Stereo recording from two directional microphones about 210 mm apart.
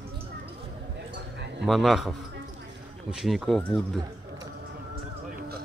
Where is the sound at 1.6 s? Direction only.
Centre (ahead or behind).